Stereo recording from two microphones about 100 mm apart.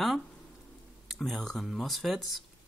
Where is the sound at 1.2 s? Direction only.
5° left (ahead or behind).